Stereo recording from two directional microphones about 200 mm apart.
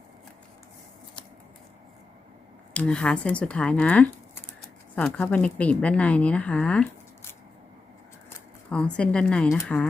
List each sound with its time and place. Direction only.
2.7 s speech: 5° left (ahead or behind)
8.7 s speech: 5° left (ahead or behind)